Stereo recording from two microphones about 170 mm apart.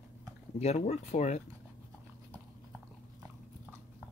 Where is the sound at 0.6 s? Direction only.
40° left (ahead or behind).